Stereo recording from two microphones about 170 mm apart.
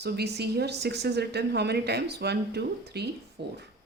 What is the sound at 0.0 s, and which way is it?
Speech, 75° right (ahead or behind).